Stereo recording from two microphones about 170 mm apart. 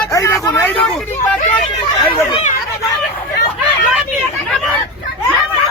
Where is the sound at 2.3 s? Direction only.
40° left (ahead or behind).